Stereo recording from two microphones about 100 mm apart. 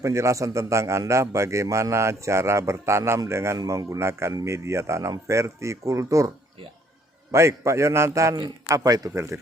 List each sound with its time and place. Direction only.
0.0 s a man's voice: 30° right (ahead or behind)